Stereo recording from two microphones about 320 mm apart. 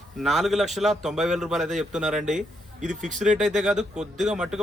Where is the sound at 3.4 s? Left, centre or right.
Centre.